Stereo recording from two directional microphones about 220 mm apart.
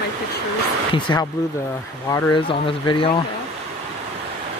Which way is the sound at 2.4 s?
25° left (ahead or behind).